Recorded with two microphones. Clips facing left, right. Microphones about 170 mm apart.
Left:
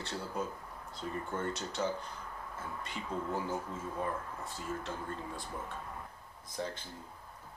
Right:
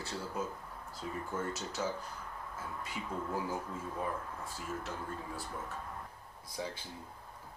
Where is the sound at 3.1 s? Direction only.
25° left (ahead or behind).